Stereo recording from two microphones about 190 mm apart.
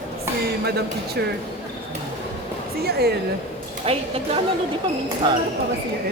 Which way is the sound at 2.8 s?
55° right (ahead or behind).